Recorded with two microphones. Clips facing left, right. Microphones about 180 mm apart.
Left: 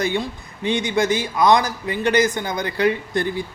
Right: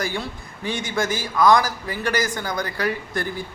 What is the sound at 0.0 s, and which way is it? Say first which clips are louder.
A man's voice: left 5 dB; 20° left (ahead or behind).